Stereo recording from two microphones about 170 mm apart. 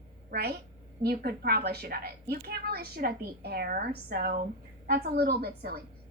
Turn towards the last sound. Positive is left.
turn(degrees=-65)  # may be behind; listen again after turning